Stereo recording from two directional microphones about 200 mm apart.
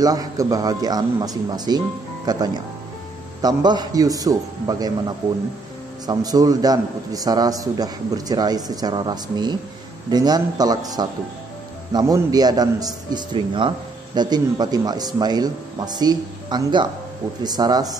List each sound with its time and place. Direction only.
0.0 s a man's voice: 20° right (ahead or behind)